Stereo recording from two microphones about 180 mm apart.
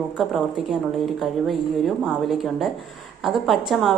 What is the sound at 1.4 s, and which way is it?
A woman's voice, centre (ahead or behind).